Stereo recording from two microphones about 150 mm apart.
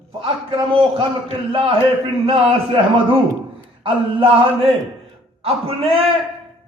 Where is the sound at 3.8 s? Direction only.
35° right (ahead or behind).